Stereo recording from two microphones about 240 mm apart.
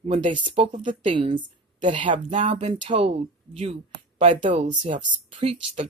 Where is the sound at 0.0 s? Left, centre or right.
Right.